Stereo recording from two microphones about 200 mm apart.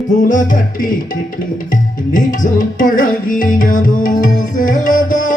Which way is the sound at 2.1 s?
40° left (ahead or behind).